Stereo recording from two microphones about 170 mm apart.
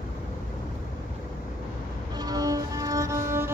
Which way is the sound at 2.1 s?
20° right (ahead or behind).